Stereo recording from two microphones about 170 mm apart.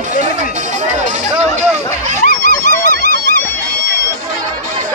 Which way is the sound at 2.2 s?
55° left (ahead or behind).